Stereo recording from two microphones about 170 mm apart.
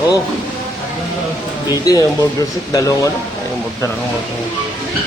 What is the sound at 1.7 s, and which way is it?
Speech, 20° left (ahead or behind).